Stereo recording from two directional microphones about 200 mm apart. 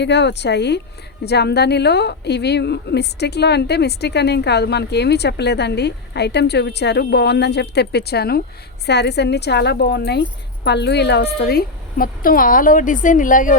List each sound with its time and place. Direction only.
0.0 s a woman's voice: 60° left (ahead or behind); by 13.6 s 40° left (ahead or behind)